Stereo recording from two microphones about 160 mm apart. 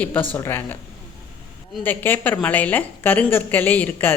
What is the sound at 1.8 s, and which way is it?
Speech, 10° left (ahead or behind).